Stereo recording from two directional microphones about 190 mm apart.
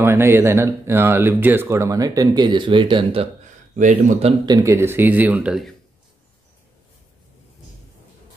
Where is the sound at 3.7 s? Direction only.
40° right (ahead or behind).